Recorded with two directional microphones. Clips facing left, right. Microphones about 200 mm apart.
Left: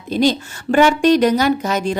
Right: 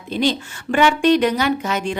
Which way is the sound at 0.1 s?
40° left (ahead or behind).